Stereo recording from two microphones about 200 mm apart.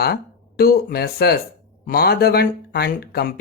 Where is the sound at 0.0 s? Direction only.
50° left (ahead or behind).